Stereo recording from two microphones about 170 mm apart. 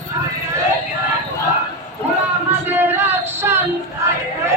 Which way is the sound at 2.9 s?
15° right (ahead or behind).